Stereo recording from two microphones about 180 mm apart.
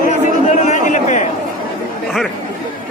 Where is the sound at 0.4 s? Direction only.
40° left (ahead or behind).